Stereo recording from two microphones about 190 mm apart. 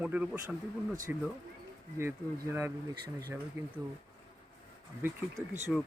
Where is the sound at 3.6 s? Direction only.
15° right (ahead or behind).